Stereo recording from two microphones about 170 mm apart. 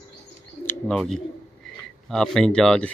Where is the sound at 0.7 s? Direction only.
5° left (ahead or behind).